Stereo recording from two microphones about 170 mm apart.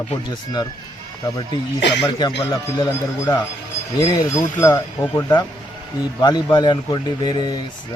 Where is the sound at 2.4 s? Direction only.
20° left (ahead or behind).